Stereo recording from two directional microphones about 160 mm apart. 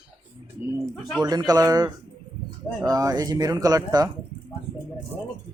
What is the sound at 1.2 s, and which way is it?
Speech, 25° right (ahead or behind).